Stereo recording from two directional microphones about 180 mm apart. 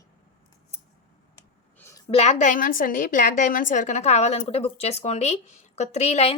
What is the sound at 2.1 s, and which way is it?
A woman's voice, 35° left (ahead or behind).